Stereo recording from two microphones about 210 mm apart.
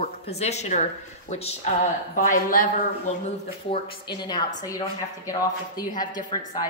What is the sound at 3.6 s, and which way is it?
Speech, 20° left (ahead or behind).